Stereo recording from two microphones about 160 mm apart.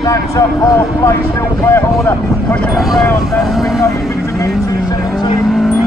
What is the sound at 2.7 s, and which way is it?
Speech, centre (ahead or behind).